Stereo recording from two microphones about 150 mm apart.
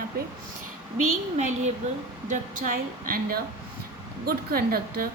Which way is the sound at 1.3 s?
55° right (ahead or behind).